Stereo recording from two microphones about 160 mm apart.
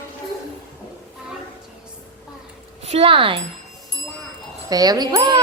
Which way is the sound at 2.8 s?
40° right (ahead or behind).